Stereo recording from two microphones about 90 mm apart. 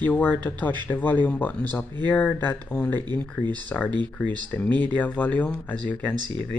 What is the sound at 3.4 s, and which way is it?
Speech, 55° right (ahead or behind).